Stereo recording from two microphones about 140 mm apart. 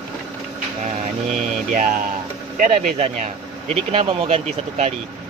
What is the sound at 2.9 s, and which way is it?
Speech, 50° right (ahead or behind).